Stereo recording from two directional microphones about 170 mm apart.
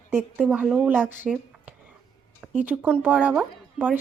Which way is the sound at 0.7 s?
10° right (ahead or behind).